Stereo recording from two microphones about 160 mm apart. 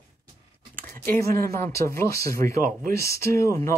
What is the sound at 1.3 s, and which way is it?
Speech, 70° right (ahead or behind).